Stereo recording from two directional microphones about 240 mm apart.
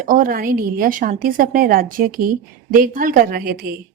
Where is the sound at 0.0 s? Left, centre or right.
Right.